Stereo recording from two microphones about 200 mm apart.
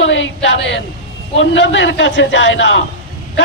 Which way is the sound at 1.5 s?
65° left (ahead or behind).